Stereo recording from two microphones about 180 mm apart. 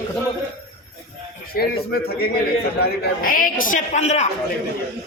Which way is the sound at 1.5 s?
55° left (ahead or behind).